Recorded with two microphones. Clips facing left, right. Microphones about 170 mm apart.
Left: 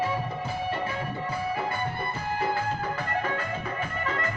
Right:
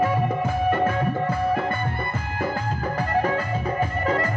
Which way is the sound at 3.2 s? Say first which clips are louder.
Right 6 dB; 40° right (ahead or behind).